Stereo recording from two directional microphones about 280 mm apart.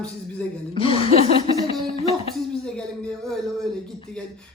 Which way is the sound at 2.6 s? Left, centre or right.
Centre.